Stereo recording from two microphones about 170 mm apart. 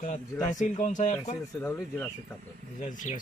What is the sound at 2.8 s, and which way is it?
Speech, 50° left (ahead or behind).